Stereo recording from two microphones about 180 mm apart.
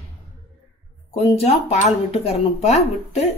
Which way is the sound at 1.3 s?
35° left (ahead or behind).